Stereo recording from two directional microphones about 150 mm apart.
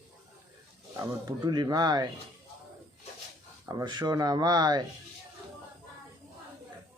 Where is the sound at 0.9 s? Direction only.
25° right (ahead or behind).